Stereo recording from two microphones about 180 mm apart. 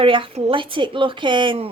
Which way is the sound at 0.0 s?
30° right (ahead or behind).